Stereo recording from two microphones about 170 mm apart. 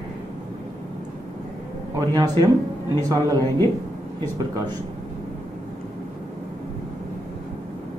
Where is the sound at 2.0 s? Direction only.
20° right (ahead or behind).